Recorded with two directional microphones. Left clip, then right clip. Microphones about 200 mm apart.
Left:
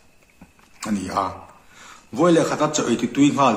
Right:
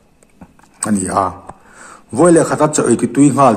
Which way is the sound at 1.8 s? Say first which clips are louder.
Right 8 dB; 45° right (ahead or behind).